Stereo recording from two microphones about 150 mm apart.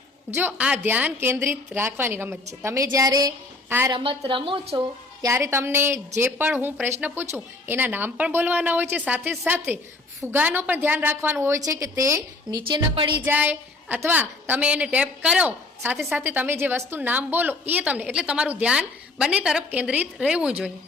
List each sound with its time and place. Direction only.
0.4 s a woman's voice: 10° right (ahead or behind)
3.9 s a woman's voice: 35° right (ahead or behind)
5.2 s a woman's voice: 20° right (ahead or behind)
13.2 s a woman's voice: 10° right (ahead or behind)